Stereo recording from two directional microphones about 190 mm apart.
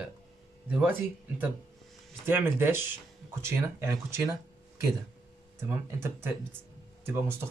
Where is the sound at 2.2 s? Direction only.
10° right (ahead or behind).